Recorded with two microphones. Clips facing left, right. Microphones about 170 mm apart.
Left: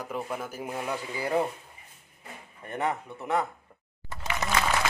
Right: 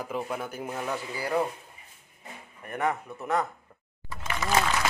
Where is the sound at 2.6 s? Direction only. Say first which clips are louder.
Right 1 dB; 25° left (ahead or behind).